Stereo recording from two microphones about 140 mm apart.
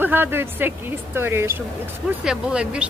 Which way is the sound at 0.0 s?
15° right (ahead or behind).